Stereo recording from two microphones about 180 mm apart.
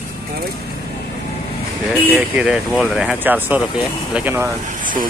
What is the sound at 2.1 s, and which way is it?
Speech, 5° right (ahead or behind).